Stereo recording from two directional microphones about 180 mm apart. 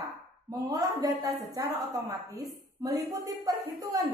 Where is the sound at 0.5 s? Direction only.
20° right (ahead or behind).